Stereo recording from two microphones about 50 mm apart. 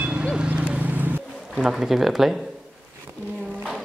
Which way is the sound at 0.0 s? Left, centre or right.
Right.